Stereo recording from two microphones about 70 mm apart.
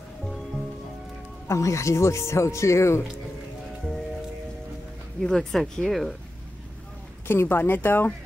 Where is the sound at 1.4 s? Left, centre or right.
Left.